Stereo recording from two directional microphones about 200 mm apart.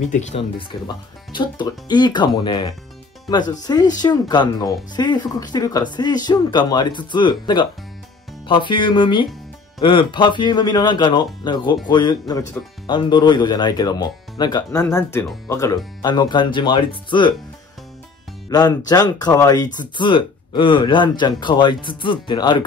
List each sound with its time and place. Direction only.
0.1 s speech: 35° left (ahead or behind)
18.5 s speech: 20° left (ahead or behind)